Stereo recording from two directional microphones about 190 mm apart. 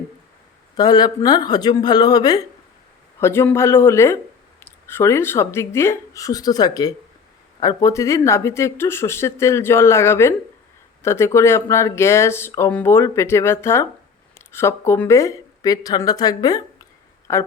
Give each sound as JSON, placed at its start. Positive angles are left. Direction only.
{"t": 0.8, "sound": "speech", "side_deg": 20}